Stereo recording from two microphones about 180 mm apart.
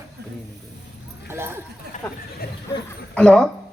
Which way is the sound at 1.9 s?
40° left (ahead or behind).